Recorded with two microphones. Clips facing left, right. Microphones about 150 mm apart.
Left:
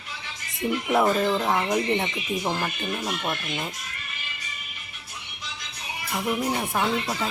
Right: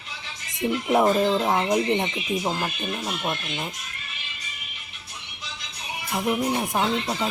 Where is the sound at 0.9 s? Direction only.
20° right (ahead or behind).